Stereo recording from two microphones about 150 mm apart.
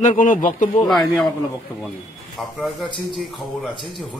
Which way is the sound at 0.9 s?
Centre (ahead or behind).